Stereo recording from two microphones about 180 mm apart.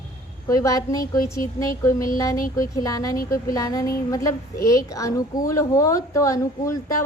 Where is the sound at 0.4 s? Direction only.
20° left (ahead or behind).